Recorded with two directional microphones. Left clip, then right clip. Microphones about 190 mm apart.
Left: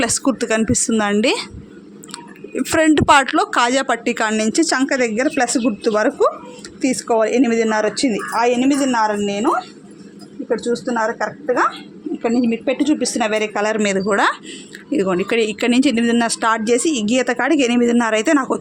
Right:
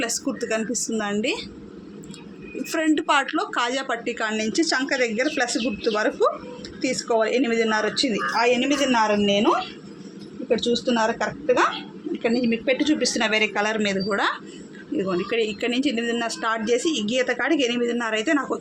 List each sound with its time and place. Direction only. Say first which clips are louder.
0.0 s a woman's voice: left 8 dB; 60° left (ahead or behind)
2.6 s a woman's voice: left 8 dB; 60° left (ahead or behind)